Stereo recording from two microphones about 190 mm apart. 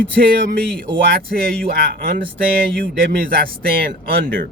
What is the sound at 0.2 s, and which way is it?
A man's voice, 50° right (ahead or behind).